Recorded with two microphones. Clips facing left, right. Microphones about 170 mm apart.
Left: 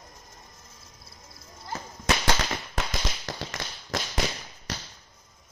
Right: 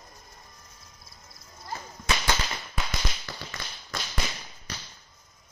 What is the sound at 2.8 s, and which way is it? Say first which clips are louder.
Firecracker: left 2 dB; 90° left.